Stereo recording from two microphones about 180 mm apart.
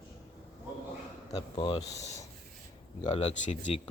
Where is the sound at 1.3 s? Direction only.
25° left (ahead or behind).